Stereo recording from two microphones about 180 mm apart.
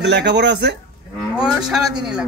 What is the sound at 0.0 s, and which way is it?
Speech, 70° right (ahead or behind).